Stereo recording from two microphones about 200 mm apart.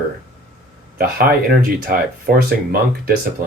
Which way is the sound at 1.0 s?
50° right (ahead or behind).